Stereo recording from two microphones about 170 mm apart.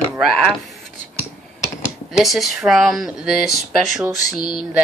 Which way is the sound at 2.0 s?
Centre (ahead or behind).